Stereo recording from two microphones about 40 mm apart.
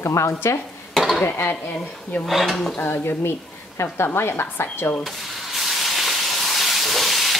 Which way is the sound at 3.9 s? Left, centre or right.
Left.